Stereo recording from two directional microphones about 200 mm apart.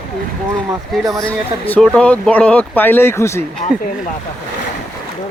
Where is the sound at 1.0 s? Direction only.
15° right (ahead or behind).